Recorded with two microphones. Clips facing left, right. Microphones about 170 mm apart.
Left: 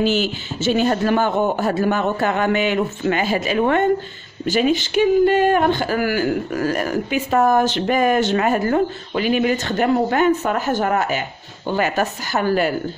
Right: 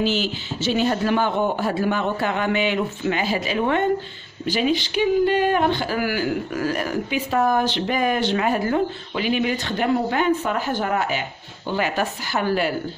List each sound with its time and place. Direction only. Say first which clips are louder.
0.0 s speech: left 3 dB; 50° left (ahead or behind)